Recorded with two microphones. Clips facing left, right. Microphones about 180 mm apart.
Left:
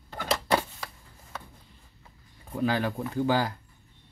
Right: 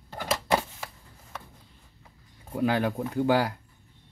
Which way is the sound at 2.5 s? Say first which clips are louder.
Right 2 dB; 15° right (ahead or behind).